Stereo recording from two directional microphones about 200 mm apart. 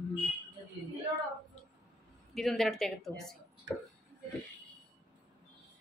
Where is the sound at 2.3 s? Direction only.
Centre (ahead or behind).